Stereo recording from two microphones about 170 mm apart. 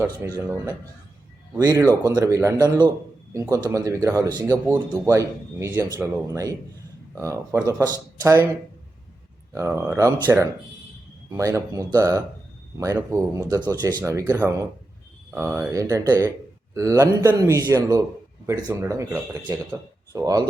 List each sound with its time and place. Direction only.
0.3 s a man's voice: 15° right (ahead or behind)
4.4 s a man's voice: 10° right (ahead or behind)
9.6 s a man's voice: 15° right (ahead or behind)